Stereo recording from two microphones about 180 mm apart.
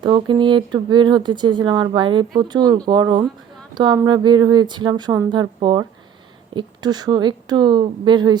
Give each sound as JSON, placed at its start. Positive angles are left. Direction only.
{"t": 0.0, "sound": "speech", "side_deg": -25}